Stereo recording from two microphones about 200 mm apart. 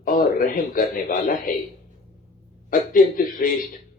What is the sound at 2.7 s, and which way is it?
Speech, 45° left (ahead or behind).